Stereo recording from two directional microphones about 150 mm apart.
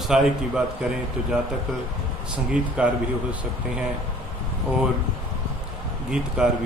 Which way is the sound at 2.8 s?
5° right (ahead or behind).